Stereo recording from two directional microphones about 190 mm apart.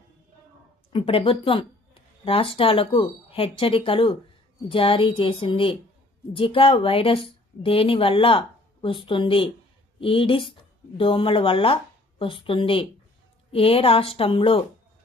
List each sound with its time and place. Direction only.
0.9 s speech: 30° left (ahead or behind)